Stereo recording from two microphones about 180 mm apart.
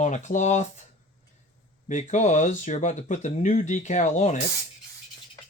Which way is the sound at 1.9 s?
40° left (ahead or behind).